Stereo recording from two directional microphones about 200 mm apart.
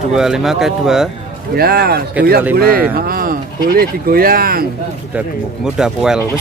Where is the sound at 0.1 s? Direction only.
5° right (ahead or behind).